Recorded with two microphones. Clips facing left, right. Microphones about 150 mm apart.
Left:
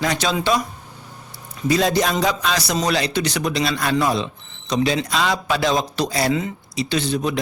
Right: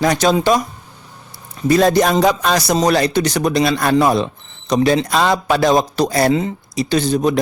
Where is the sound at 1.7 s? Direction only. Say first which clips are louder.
Right 6 dB; 50° right (ahead or behind).